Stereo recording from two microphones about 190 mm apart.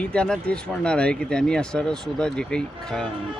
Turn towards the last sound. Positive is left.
turn(degrees=5)  # may be behind; listen again after turning